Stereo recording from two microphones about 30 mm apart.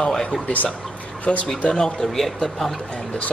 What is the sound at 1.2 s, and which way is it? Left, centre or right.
Speech, left.